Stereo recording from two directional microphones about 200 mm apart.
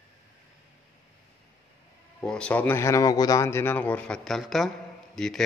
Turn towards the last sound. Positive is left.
turn(degrees=5)  # may be behind; listen again after turning